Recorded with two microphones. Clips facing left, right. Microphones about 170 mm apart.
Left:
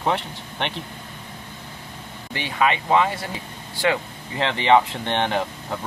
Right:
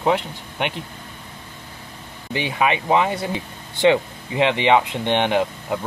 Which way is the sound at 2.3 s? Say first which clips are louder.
Right 1 dB; 20° right (ahead or behind).